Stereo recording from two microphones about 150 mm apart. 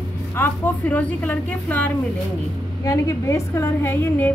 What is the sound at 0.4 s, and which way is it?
A woman's voice, 10° left (ahead or behind).